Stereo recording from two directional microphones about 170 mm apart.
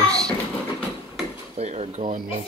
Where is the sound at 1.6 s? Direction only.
40° right (ahead or behind).